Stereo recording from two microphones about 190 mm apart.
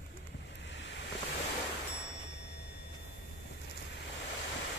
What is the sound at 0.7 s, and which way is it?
Ocean, 70° left (ahead or behind).